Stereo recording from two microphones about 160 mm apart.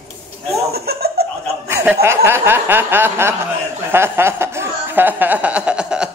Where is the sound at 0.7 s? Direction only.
80° right.